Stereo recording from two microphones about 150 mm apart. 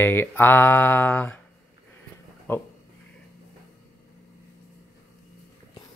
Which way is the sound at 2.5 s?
10° left (ahead or behind).